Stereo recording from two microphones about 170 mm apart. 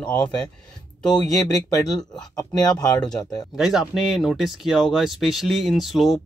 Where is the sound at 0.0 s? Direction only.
5° left (ahead or behind).